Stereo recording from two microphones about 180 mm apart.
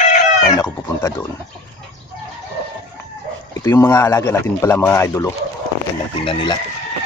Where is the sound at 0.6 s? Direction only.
15° left (ahead or behind).